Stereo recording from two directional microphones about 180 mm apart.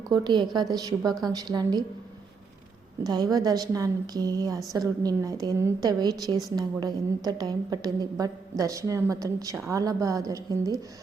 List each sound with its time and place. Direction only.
0.1 s a woman's voice: 25° right (ahead or behind)
3.0 s a woman's voice: 20° right (ahead or behind)